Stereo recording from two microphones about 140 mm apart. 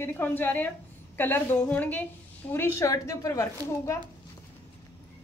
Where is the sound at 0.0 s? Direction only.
15° left (ahead or behind).